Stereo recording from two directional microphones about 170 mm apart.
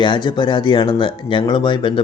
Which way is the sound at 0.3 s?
25° left (ahead or behind).